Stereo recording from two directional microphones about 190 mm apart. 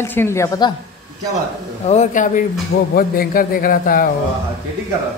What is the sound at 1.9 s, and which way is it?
A man's voice, 40° left (ahead or behind).